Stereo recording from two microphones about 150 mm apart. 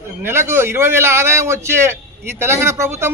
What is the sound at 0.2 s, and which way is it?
A man's voice, 15° right (ahead or behind).